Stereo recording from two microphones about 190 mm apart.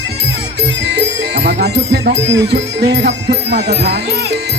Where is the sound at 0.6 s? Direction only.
65° right (ahead or behind).